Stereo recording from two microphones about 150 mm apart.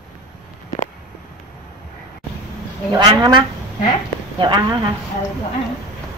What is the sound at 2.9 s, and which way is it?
A woman's voice, 30° right (ahead or behind).